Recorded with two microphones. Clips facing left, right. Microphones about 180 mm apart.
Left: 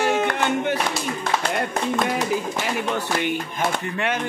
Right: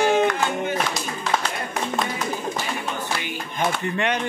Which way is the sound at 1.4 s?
55° left (ahead or behind).